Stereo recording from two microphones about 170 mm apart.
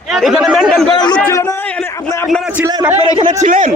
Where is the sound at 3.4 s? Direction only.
50° right (ahead or behind).